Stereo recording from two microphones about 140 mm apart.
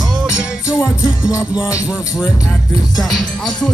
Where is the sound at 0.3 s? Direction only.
20° left (ahead or behind).